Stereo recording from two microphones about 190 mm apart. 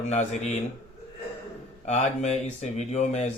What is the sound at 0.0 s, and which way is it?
Speech, 35° left (ahead or behind).